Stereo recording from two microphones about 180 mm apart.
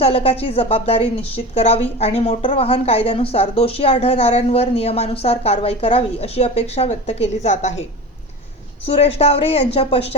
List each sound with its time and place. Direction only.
0.0 s a woman's voice: 30° left (ahead or behind)
8.9 s a woman's voice: 35° left (ahead or behind)